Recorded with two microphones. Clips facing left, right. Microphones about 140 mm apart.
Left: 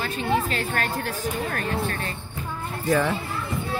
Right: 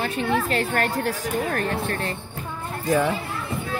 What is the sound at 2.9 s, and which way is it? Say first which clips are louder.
Speech: right 1 dB; 10° right (ahead or behind).